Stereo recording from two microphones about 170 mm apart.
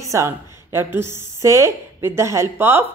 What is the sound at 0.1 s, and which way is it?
Speech, 15° right (ahead or behind).